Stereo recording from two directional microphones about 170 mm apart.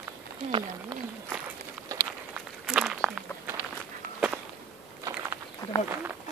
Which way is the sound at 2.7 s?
5° right (ahead or behind).